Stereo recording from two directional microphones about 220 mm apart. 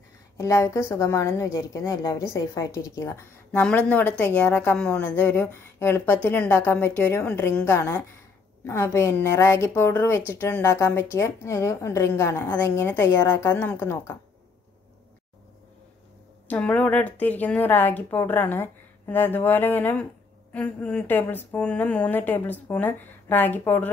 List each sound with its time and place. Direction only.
0.4 s a woman's voice: 10° left (ahead or behind)
16.4 s a woman's voice: 5° left (ahead or behind)